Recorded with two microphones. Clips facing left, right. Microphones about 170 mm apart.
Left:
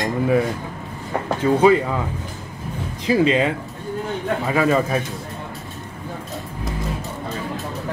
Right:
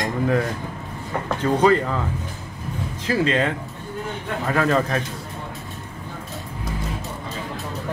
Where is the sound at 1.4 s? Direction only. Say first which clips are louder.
Left 3 dB; 10° left (ahead or behind).